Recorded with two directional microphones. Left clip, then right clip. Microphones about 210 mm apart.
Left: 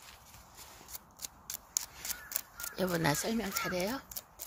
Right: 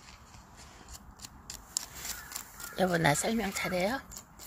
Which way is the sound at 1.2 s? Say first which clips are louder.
Left 2 dB; 50° left (ahead or behind).